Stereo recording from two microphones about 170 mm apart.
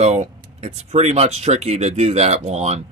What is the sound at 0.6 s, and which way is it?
Speech, 40° right (ahead or behind).